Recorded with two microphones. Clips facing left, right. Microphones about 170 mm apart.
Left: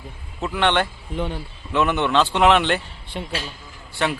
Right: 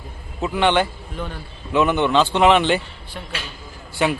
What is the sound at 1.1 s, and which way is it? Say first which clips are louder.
Speech: left 4 dB; 20° left (ahead or behind).